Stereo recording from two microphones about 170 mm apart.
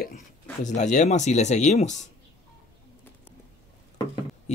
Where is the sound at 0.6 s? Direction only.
45° left (ahead or behind).